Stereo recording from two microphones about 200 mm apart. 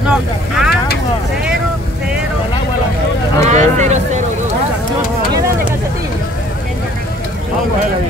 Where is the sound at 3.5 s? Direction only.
35° right (ahead or behind).